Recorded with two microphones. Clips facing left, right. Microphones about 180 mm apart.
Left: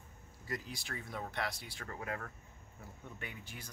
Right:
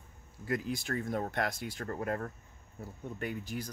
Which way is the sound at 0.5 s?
50° right (ahead or behind).